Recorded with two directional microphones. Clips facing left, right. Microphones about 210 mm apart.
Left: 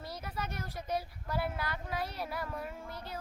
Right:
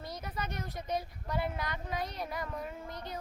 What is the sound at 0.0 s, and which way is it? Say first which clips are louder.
Speech: right 1 dB; 5° left (ahead or behind).